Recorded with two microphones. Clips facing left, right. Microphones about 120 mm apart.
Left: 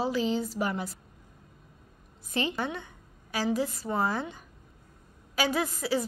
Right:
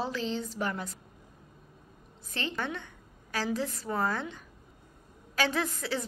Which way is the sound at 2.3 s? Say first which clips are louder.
Left 4 dB; 10° left (ahead or behind).